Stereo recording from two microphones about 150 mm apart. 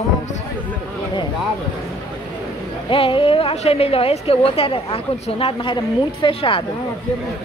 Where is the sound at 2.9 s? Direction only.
35° left (ahead or behind).